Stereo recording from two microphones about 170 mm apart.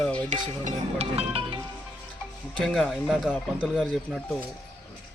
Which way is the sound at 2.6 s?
Centre (ahead or behind).